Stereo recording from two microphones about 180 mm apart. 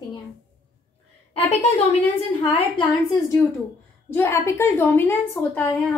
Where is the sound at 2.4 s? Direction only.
25° left (ahead or behind).